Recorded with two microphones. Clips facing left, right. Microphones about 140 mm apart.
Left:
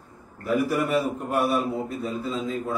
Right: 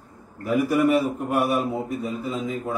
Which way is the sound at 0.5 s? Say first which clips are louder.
Right 3 dB; 10° right (ahead or behind).